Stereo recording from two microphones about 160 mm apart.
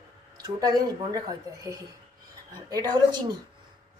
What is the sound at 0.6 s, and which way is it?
A woman's voice, 25° right (ahead or behind).